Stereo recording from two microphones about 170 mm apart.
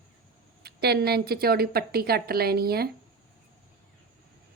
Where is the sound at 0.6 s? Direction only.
70° right (ahead or behind).